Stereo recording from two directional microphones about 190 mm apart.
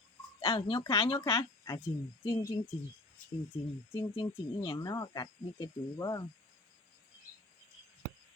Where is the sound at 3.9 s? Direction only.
20° left (ahead or behind).